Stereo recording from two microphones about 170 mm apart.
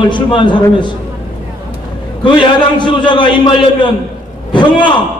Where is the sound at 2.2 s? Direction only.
30° left (ahead or behind).